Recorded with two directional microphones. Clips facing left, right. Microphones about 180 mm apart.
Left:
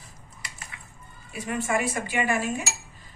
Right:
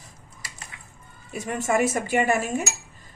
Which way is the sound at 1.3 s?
45° right (ahead or behind).